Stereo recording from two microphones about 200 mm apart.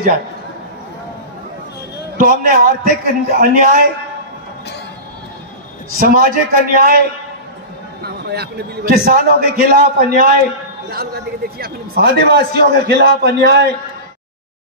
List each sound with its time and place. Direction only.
2.1 s a man's voice: 45° right (ahead or behind)
5.9 s a man's voice: 45° right (ahead or behind)
8.3 s a man's voice: 50° right (ahead or behind)